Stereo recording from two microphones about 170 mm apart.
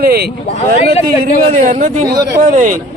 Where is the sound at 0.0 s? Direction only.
70° right (ahead or behind).